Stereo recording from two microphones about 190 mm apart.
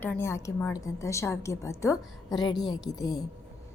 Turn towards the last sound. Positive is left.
turn(degrees=20)  # may be behind; listen again after turning